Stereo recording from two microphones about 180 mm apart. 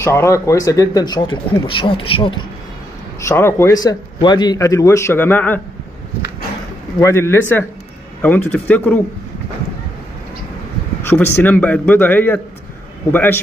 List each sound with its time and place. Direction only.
0.0 s speech: 15° left (ahead or behind)
3.3 s speech: 15° left (ahead or behind)
7.0 s speech: 15° left (ahead or behind)
11.1 s speech: 10° left (ahead or behind)